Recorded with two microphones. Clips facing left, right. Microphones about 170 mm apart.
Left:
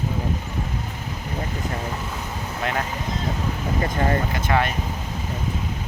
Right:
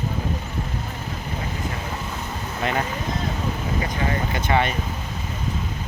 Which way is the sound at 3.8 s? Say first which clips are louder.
Left 5 dB; 45° left (ahead or behind).